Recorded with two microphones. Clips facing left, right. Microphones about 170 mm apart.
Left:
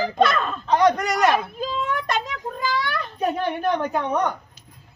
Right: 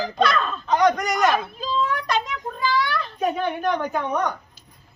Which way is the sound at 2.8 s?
50° left (ahead or behind).